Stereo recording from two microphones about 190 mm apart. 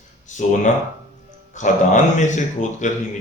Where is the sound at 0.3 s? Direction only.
40° left (ahead or behind).